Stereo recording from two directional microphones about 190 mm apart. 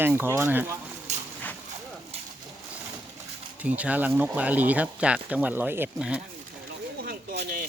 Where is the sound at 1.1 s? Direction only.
40° right (ahead or behind).